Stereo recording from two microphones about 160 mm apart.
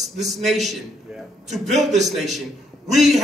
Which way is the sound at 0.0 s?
Centre (ahead or behind).